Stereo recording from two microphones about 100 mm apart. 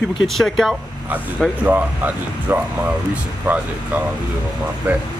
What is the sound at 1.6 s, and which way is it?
Speech, 20° right (ahead or behind).